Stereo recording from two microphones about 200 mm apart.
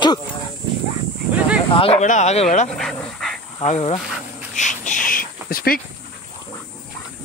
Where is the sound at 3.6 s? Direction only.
35° left (ahead or behind).